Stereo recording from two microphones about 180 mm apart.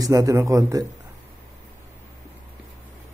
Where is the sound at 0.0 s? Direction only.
20° right (ahead or behind).